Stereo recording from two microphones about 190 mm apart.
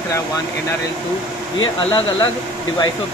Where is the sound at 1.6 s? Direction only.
25° left (ahead or behind).